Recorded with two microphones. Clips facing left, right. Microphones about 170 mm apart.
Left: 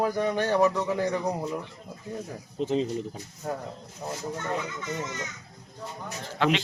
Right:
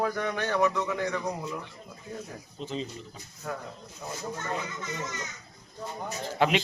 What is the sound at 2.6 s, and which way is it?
Speech, 70° left (ahead or behind).